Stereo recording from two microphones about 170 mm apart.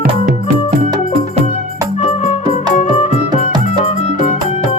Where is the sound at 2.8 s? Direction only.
40° left (ahead or behind).